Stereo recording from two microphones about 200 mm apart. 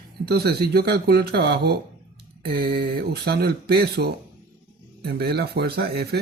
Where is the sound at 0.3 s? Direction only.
50° right (ahead or behind).